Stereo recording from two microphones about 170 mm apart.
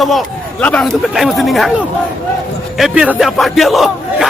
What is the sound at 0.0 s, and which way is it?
Speech, centre (ahead or behind).